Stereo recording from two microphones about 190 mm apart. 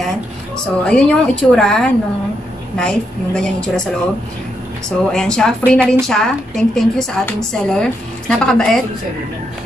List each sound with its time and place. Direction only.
0.8 s a woman's voice: 5° left (ahead or behind)
4.8 s a woman's voice: 5° left (ahead or behind)
5.6 s a woman's voice: 10° right (ahead or behind)
6.0 s a woman's voice: centre (ahead or behind)